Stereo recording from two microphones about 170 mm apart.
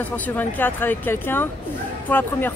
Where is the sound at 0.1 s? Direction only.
10° left (ahead or behind).